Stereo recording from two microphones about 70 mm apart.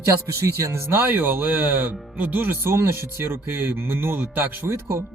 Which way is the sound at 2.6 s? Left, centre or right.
Right.